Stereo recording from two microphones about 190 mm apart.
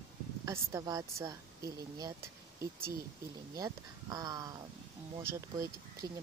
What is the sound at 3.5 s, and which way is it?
A woman's voice, 20° right (ahead or behind).